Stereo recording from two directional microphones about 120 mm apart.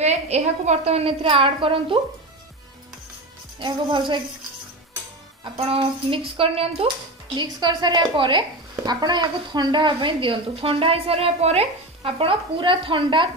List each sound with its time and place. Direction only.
0.0 s a woman's voice: 65° right (ahead or behind); by 2.0 s 50° right (ahead or behind)
3.5 s speech: 40° right (ahead or behind)
5.6 s a woman's voice: 50° right (ahead or behind)
7.3 s a woman's voice: 40° right (ahead or behind)